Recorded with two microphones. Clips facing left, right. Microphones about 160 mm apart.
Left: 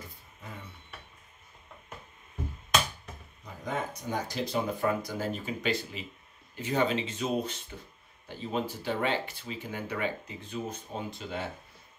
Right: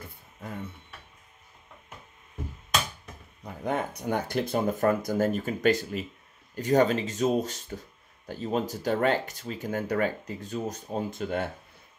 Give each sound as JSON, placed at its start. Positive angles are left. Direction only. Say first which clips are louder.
{"t": 3.6, "sound": "speech", "louder": "right 5 dB", "side_deg": -60}